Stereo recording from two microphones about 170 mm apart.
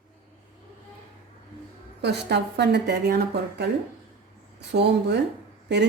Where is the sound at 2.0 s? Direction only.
80° right.